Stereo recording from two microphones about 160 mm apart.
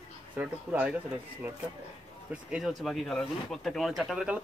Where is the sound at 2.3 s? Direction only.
5° right (ahead or behind).